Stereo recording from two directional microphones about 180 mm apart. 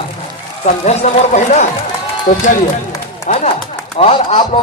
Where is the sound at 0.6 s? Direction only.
40° left (ahead or behind).